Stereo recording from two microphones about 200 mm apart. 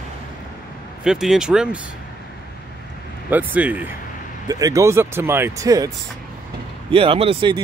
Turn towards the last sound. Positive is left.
turn(degrees=-25)  # may be behind; listen again after turning